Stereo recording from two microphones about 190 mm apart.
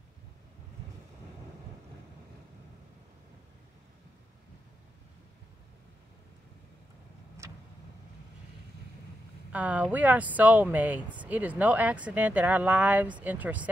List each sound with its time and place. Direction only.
7.4 s vehicle: 15° right (ahead or behind)
9.5 s speech: 5° right (ahead or behind)